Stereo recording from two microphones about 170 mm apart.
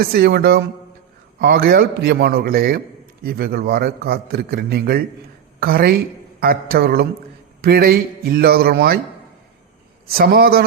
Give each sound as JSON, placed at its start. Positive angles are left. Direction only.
{"t": 0.0, "sound": "a man's voice", "side_deg": -65}
{"t": 10.1, "sound": "a man's voice", "side_deg": -65}